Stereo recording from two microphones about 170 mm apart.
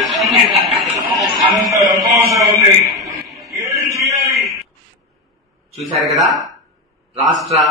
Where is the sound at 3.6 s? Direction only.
20° right (ahead or behind).